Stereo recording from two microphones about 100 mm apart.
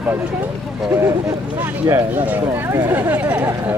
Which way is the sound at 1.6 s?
30° right (ahead or behind).